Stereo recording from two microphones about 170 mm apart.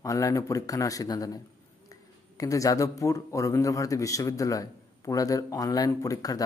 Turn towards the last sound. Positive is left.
turn(degrees=20)  # may be behind; listen again after turning